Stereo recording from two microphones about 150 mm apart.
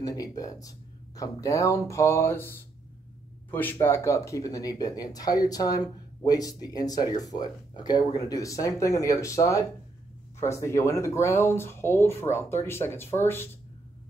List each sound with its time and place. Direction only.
0.0 s speech: 25° left (ahead or behind)